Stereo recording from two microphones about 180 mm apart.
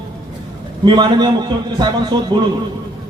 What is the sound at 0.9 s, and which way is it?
A man's voice, 25° right (ahead or behind).